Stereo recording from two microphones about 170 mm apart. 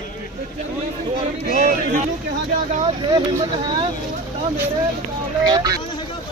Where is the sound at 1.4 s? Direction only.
50° right (ahead or behind).